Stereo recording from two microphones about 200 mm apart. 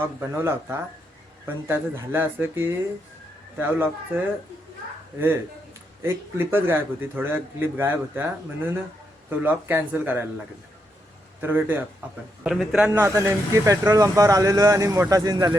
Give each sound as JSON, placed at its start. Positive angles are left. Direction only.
{"t": 0.2, "sound": "a man's voice", "side_deg": -10}
{"t": 6.0, "sound": "a man's voice", "side_deg": -10}
{"t": 11.3, "sound": "a man's voice", "side_deg": -10}
{"t": 12.9, "sound": "a man's voice", "side_deg": -15}